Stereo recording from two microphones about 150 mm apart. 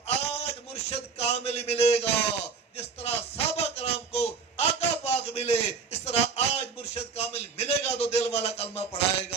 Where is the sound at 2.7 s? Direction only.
45° left (ahead or behind).